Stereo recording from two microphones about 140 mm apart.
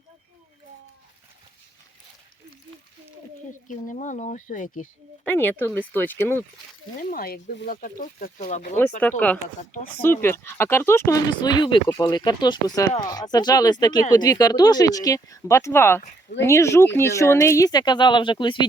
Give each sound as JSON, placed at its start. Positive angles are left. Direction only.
{"t": 3.7, "sound": "speech", "side_deg": 65}
{"t": 5.2, "sound": "speech", "side_deg": 15}
{"t": 7.0, "sound": "speech", "side_deg": 90}
{"t": 8.8, "sound": "speech", "side_deg": 10}
{"t": 11.3, "sound": "speech", "side_deg": 30}